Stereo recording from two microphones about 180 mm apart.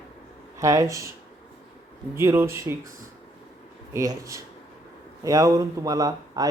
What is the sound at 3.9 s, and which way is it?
A man's voice, 15° right (ahead or behind).